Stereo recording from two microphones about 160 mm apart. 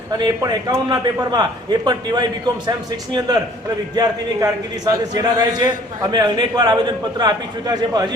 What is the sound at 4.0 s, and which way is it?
A man's voice, 20° right (ahead or behind).